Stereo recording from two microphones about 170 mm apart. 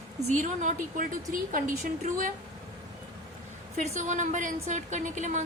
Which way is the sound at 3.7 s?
45° right (ahead or behind).